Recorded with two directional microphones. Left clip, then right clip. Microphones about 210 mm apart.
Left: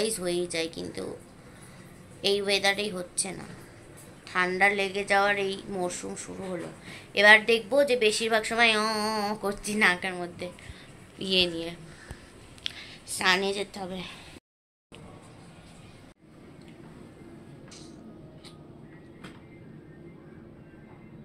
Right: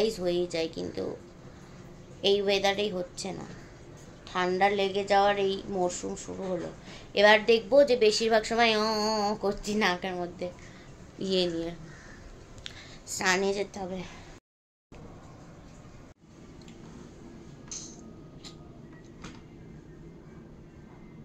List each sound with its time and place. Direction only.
0.0 s a woman's voice: 10° right (ahead or behind)
2.2 s a woman's voice: 15° right (ahead or behind)
12.7 s a woman's voice: 5° right (ahead or behind)